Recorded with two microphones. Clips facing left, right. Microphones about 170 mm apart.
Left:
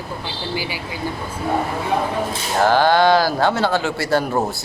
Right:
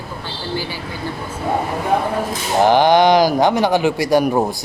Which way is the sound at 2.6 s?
20° right (ahead or behind).